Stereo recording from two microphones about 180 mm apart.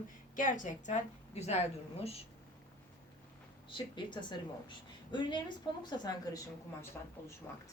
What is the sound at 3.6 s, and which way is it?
A woman's voice, 25° left (ahead or behind).